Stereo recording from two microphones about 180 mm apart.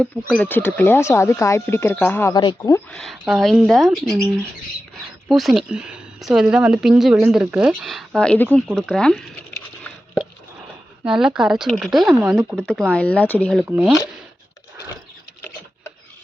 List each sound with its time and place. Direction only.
0.0 s speech: 5° left (ahead or behind)
2.3 s speech: 25° left (ahead or behind)
2.9 s speech: centre (ahead or behind)
5.3 s speech: centre (ahead or behind)
11.0 s speech: 5° right (ahead or behind)
12.9 s speech: 5° left (ahead or behind)
13.7 s speech: 5° right (ahead or behind)